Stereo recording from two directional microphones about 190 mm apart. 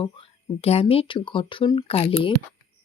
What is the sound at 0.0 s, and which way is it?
Speech, 30° left (ahead or behind).